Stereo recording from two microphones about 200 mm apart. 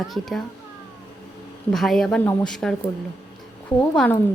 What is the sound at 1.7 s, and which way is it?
A woman's voice, centre (ahead or behind).